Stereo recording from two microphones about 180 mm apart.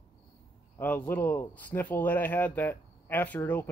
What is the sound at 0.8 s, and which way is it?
Speech, 10° left (ahead or behind).